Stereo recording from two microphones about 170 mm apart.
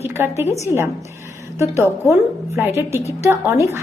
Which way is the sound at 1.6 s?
20° left (ahead or behind).